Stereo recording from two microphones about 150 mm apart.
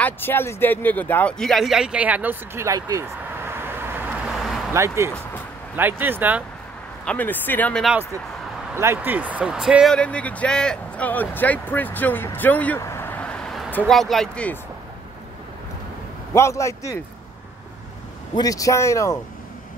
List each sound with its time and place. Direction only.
0.0 s speech: 15° left (ahead or behind); by 4.3 s 15° right (ahead or behind)
4.3 s a sound: centre (ahead or behind)
4.7 s speech: 20° right (ahead or behind)
7.1 s speech: 10° left (ahead or behind)
7.8 s speech: 10° right (ahead or behind)
9.9 s speech: 10° left (ahead or behind)
16.3 s speech: 20° left (ahead or behind)
18.3 s speech: 25° left (ahead or behind)